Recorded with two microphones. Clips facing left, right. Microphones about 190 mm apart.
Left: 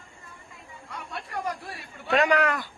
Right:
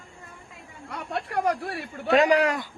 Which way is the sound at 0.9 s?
65° right (ahead or behind).